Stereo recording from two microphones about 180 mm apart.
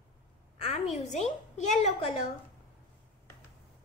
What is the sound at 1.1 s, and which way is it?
A woman's voice, 40° left (ahead or behind).